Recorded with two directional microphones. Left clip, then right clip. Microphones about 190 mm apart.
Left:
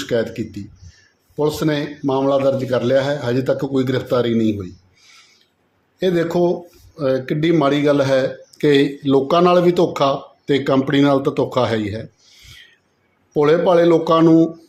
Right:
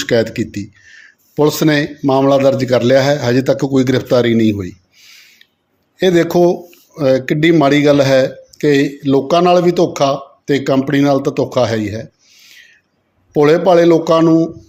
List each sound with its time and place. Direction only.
0.0 s a man's voice: 25° right (ahead or behind)
6.0 s a man's voice: 25° right (ahead or behind)
8.4 s speech: 10° right (ahead or behind)
13.3 s a man's voice: 20° right (ahead or behind)
14.3 s speech: 5° right (ahead or behind)